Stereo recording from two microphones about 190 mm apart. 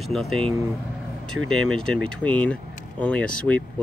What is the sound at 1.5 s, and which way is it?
Speech, 5° left (ahead or behind).